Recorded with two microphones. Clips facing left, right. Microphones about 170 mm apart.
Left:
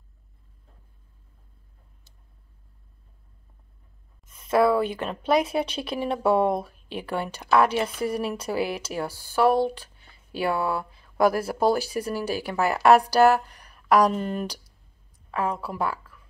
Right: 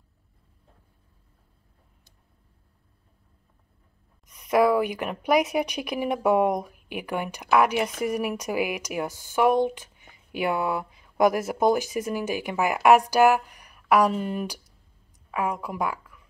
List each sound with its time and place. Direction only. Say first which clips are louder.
4.3 s a woman's voice: even; 15° right (ahead or behind)